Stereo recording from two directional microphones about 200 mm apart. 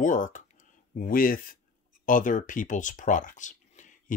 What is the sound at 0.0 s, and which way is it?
Speech, 40° left (ahead or behind).